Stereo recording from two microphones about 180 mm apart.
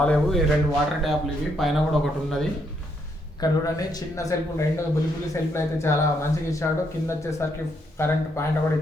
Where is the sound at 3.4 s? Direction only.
20° left (ahead or behind).